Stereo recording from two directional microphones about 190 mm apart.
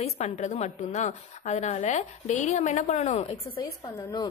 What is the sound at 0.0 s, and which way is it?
A woman's voice, 35° left (ahead or behind).